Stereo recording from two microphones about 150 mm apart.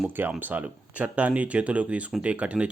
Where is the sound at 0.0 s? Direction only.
10° right (ahead or behind).